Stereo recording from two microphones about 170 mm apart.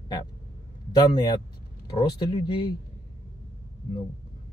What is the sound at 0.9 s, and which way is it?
Speech, 25° left (ahead or behind).